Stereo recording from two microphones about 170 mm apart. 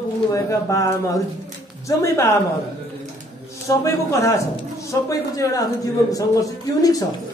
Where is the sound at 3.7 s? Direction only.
20° left (ahead or behind).